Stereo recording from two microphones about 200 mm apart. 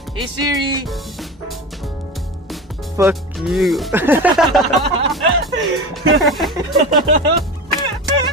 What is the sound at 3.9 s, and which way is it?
Music, 10° right (ahead or behind).